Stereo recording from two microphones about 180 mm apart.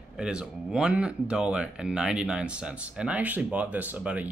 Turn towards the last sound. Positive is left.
turn(degrees=-10)  # may be behind; listen again after turning